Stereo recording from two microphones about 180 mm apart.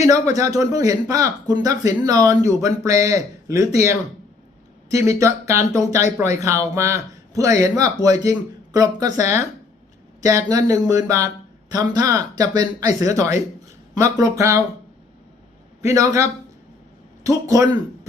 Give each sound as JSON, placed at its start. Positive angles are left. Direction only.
{"t": 0.3, "sound": "speech", "side_deg": -20}
{"t": 15.8, "sound": "speech", "side_deg": -15}
{"t": 17.5, "sound": "speech", "side_deg": -20}